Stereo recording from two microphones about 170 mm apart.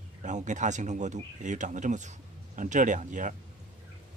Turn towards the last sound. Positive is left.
turn(degrees=-50)  # may be behind; listen again after turning